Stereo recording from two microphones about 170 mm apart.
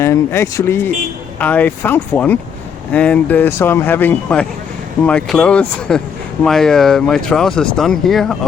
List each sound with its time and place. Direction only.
0.0 s speech: 15° left (ahead or behind)